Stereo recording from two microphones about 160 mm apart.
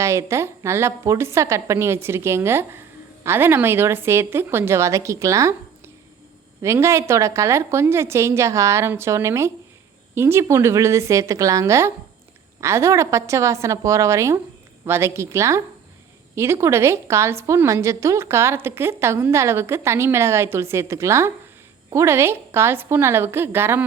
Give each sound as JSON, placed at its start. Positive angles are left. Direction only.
{"t": 0.0, "sound": "a woman's voice", "side_deg": -20}